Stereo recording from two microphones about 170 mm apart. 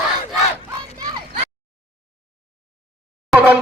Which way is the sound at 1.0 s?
25° right (ahead or behind).